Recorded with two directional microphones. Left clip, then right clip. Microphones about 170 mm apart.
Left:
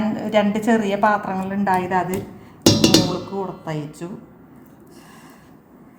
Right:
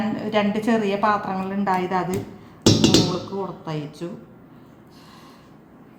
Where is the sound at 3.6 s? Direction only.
25° left (ahead or behind).